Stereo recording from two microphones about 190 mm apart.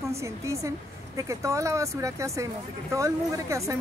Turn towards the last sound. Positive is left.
turn(degrees=-15)  # may be behind; listen again after turning